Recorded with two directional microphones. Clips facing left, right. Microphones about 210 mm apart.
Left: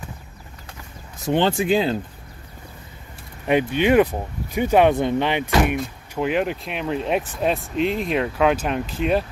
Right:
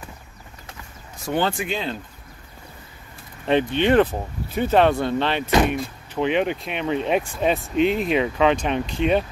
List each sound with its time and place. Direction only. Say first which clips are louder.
1.2 s speech: left 4 dB; 25° left (ahead or behind)
3.4 s speech: left 1 dB; 10° left (ahead or behind)